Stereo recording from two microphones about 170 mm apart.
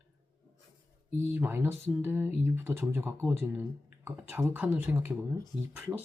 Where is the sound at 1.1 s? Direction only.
15° right (ahead or behind).